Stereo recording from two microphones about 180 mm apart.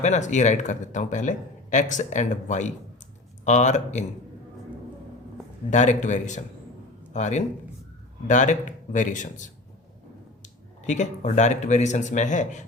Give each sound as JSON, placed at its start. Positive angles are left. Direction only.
{"t": 0.0, "sound": "speech", "side_deg": 40}
{"t": 5.7, "sound": "speech", "side_deg": 40}